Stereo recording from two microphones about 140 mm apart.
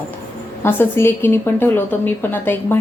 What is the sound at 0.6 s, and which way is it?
A woman's voice, 15° left (ahead or behind).